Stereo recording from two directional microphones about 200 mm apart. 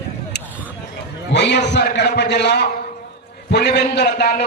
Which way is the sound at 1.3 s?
60° left (ahead or behind).